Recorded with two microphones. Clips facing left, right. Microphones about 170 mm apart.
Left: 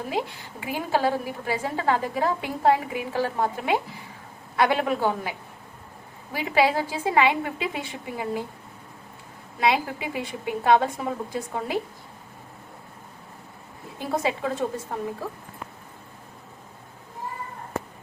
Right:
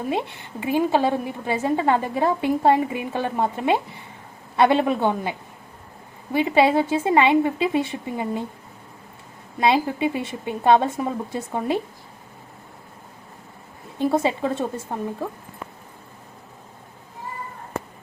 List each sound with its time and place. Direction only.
0.1 s a woman's voice: 25° right (ahead or behind)
6.3 s a woman's voice: 25° right (ahead or behind)
9.6 s a woman's voice: 25° right (ahead or behind)
14.0 s a woman's voice: 25° right (ahead or behind)